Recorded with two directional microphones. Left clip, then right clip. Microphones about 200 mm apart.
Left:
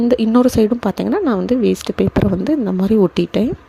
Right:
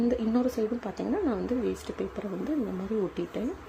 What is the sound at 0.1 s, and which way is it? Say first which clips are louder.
Speech: left 14 dB; 40° left (ahead or behind).